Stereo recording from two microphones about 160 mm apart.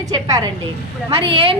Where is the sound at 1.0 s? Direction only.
35° right (ahead or behind).